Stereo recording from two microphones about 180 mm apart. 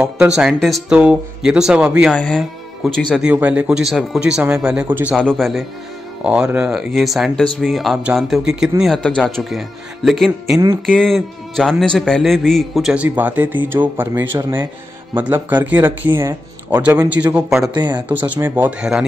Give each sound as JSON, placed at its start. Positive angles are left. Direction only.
{"t": 0.4, "sound": "speech", "side_deg": 0}
{"t": 5.1, "sound": "speech", "side_deg": 0}
{"t": 10.6, "sound": "speech", "side_deg": -15}
{"t": 11.0, "sound": "speech", "side_deg": 0}
{"t": 17.7, "sound": "speech", "side_deg": -25}
{"t": 18.3, "sound": "speech", "side_deg": -10}